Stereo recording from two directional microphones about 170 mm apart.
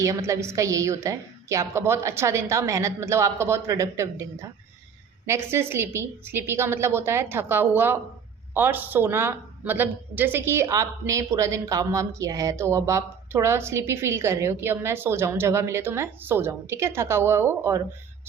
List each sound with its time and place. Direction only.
0.0 s a woman's voice: 20° right (ahead or behind)